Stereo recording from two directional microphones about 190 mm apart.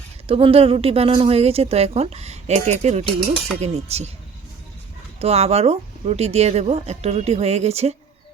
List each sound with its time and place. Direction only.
0.3 s a woman's voice: 30° right (ahead or behind)
5.2 s a woman's voice: 35° right (ahead or behind)